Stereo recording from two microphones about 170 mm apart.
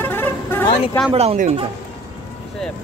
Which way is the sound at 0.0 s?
10° left (ahead or behind).